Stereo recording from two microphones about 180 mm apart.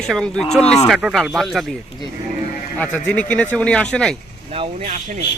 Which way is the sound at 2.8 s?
10° left (ahead or behind).